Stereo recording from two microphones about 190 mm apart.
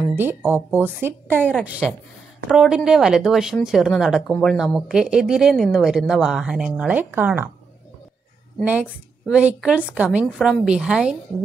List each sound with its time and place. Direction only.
0.1 s speech: 10° right (ahead or behind)
9.3 s speech: 5° right (ahead or behind)